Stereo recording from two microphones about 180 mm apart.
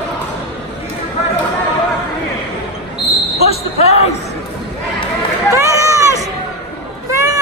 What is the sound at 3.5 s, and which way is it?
Basketball bounce, 35° left (ahead or behind).